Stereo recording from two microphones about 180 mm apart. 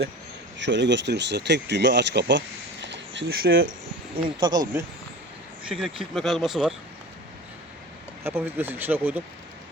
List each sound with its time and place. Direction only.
0.6 s speech: 85° right
2.8 s a sound: 75° right (ahead or behind); by 3.8 s 60° right (ahead or behind)
4.4 s speech: 25° right (ahead or behind)
5.6 s speech: 5° right (ahead or behind)
8.2 s speech: 10° right (ahead or behind)